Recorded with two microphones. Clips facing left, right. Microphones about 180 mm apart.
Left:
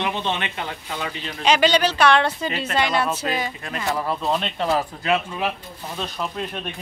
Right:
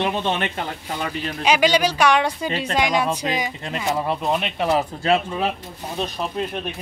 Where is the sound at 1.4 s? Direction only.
10° right (ahead or behind).